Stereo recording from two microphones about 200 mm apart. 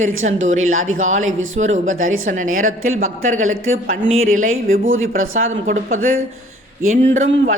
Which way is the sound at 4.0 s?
90° right.